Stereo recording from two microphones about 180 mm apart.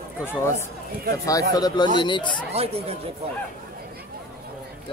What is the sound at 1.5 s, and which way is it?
Speech, 25° left (ahead or behind).